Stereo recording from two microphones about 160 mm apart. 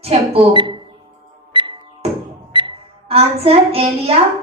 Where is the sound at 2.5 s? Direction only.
30° right (ahead or behind).